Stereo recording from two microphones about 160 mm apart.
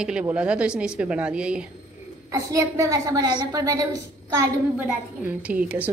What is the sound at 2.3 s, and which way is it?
A woman's voice, 20° right (ahead or behind).